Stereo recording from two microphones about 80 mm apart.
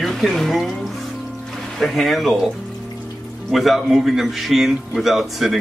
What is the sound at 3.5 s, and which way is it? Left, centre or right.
A man's voice, centre.